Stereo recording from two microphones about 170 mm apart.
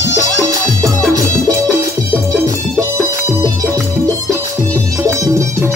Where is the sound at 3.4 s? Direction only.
15° right (ahead or behind).